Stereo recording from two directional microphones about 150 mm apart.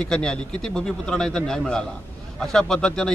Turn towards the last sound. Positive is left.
turn(degrees=5)  # may be behind; listen again after turning